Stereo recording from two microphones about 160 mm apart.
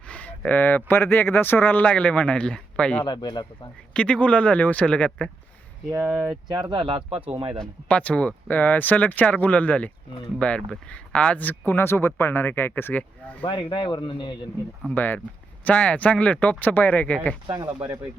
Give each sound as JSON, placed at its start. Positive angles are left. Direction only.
{"t": 0.1, "sound": "speech", "side_deg": 10}
{"t": 3.0, "sound": "speech", "side_deg": 25}
{"t": 3.9, "sound": "speech", "side_deg": 5}
{"t": 5.9, "sound": "speech", "side_deg": -10}
{"t": 6.5, "sound": "speech", "side_deg": -30}
{"t": 7.6, "sound": "speech", "side_deg": 5}
{"t": 13.4, "sound": "speech", "side_deg": 30}
{"t": 14.9, "sound": "speech", "side_deg": 10}
{"t": 17.5, "sound": "speech", "side_deg": -30}